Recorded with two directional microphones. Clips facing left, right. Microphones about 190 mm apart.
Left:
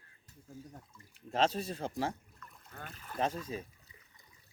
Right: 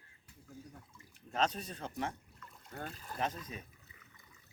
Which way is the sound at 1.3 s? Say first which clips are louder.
Left 4 dB; 30° left (ahead or behind).